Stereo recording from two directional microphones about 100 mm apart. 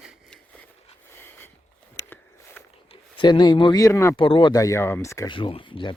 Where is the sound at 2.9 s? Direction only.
55° left (ahead or behind).